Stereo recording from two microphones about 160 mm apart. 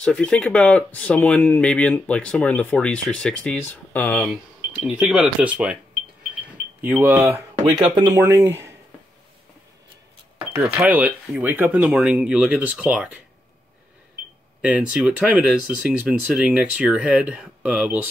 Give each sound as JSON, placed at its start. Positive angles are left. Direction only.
{"t": 0.0, "sound": "speech", "side_deg": 5}
{"t": 4.8, "sound": "speech", "side_deg": -5}
{"t": 6.8, "sound": "speech", "side_deg": -10}
{"t": 7.7, "sound": "speech", "side_deg": -25}
{"t": 10.6, "sound": "speech", "side_deg": -10}
{"t": 14.6, "sound": "speech", "side_deg": -5}